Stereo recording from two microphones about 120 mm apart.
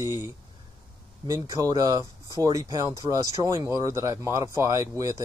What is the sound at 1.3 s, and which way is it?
Speech, 30° right (ahead or behind).